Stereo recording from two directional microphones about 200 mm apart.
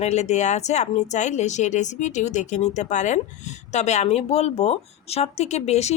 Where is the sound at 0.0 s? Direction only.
35° left (ahead or behind).